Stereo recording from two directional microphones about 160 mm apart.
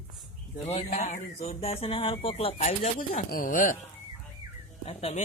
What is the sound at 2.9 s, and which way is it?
Speech, 60° left (ahead or behind).